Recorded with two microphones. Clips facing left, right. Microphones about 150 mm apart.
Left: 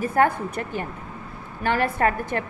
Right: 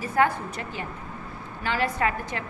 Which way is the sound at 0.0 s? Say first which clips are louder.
Left 3 dB; 50° left (ahead or behind).